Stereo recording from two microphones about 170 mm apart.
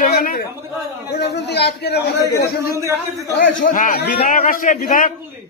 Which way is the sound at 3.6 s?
50° left (ahead or behind).